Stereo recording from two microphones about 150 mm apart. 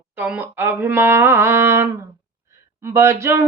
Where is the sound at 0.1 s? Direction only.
10° right (ahead or behind).